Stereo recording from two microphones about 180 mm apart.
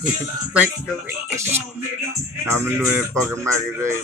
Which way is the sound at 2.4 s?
15° right (ahead or behind).